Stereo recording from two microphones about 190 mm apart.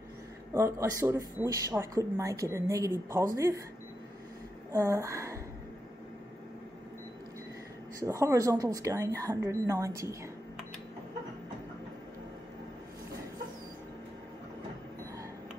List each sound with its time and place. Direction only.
0.5 s speech: 15° right (ahead or behind)
4.7 s speech: 15° right (ahead or behind)
8.0 s speech: 15° right (ahead or behind)